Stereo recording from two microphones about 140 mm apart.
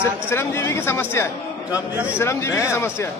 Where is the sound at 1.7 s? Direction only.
10° right (ahead or behind).